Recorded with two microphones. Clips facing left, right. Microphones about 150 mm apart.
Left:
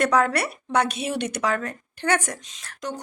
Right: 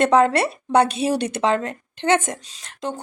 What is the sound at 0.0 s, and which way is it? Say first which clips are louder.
A woman's voice: right 5 dB; 25° right (ahead or behind).